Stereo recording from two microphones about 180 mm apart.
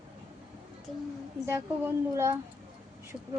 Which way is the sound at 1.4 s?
15° right (ahead or behind).